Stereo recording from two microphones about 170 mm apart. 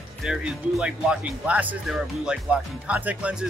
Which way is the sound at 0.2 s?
5° right (ahead or behind).